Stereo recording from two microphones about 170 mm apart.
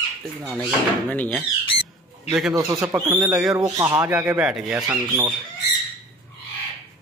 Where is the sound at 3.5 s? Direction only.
20° right (ahead or behind).